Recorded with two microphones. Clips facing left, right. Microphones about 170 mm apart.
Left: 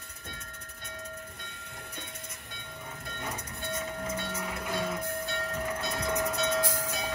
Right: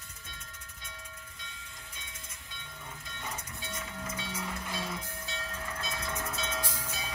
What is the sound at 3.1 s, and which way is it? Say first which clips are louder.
Music: left 4 dB; 55° left (ahead or behind).